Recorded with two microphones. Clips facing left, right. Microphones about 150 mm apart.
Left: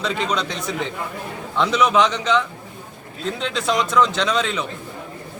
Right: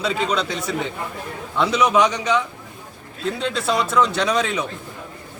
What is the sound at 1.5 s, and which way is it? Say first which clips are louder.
Speech: even; 10° right (ahead or behind).